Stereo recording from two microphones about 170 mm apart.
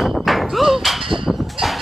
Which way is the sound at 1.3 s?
Centre (ahead or behind).